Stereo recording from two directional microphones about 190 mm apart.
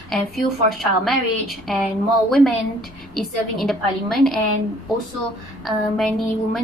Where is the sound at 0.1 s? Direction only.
Centre (ahead or behind).